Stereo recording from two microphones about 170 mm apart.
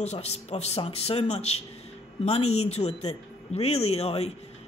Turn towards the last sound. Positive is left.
turn(degrees=35)  # may be behind; listen again after turning